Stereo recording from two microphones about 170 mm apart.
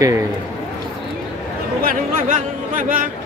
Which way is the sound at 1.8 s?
60° right (ahead or behind).